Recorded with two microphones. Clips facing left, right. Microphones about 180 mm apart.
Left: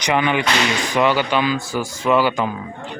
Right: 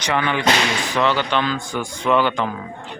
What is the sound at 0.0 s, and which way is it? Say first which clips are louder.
Speech: left 1 dB; 15° left (ahead or behind).